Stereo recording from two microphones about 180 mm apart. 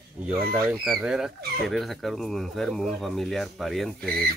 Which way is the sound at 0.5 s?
10° right (ahead or behind).